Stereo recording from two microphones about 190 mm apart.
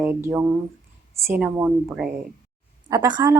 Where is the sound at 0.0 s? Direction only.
10° right (ahead or behind).